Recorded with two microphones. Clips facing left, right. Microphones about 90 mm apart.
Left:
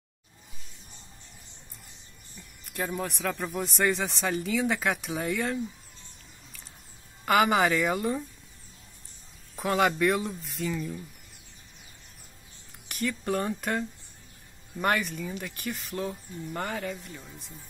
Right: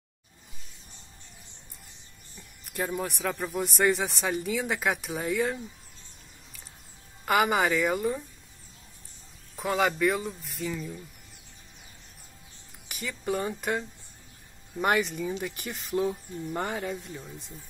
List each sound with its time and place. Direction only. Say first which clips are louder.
2.7 s speech: right 1 dB; 5° right (ahead or behind)
7.2 s speech: left 1 dB; 5° right (ahead or behind)
9.6 s speech: left 1 dB; centre (ahead or behind)
12.8 s speech: left 3 dB; 5° right (ahead or behind)